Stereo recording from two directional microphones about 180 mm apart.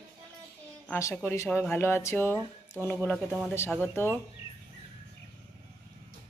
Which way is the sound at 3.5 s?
15° left (ahead or behind).